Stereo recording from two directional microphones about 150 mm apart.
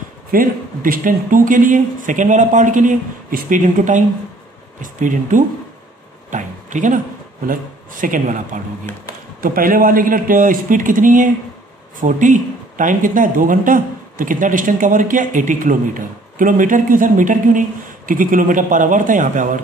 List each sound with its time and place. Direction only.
0.3 s speech: 70° right (ahead or behind)
9.4 s speech: 75° right (ahead or behind)